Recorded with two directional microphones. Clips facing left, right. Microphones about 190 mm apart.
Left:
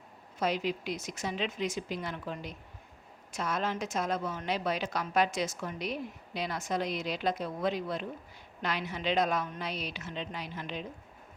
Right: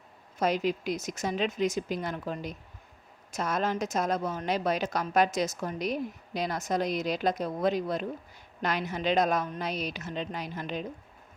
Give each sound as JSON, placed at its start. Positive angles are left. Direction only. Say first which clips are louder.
{"t": 0.3, "sound": "a woman's voice", "louder": "right 4 dB", "side_deg": -45}